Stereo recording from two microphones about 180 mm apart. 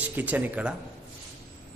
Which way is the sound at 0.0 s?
10° right (ahead or behind).